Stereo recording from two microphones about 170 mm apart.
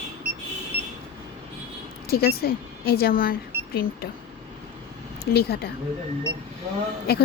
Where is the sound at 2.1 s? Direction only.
65° left (ahead or behind).